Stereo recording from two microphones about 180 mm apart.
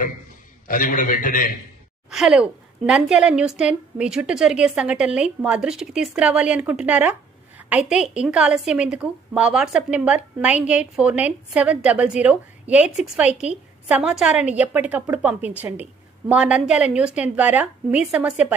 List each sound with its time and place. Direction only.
0.7 s a man's voice: 50° left (ahead or behind)
2.0 s a woman's voice: centre (ahead or behind)